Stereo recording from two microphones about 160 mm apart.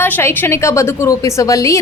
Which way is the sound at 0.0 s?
15° left (ahead or behind).